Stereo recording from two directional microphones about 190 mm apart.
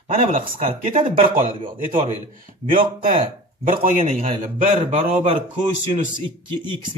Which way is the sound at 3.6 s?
45° right (ahead or behind).